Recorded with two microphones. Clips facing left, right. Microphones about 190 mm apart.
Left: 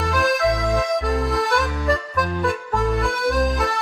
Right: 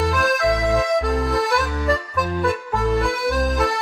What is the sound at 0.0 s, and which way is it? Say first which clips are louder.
Music: even; centre (ahead or behind).